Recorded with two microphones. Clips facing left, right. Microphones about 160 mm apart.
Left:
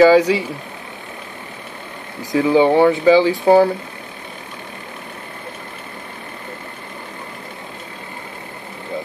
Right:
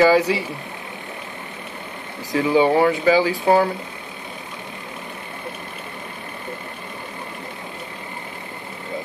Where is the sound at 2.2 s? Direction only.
20° left (ahead or behind).